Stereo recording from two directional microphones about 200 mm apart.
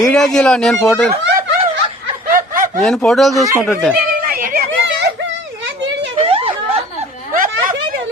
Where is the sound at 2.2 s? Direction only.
45° right (ahead or behind).